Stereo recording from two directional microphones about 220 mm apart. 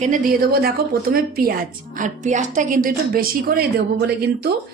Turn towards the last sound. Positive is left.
turn(degrees=-45)  # may be behind; listen again after turning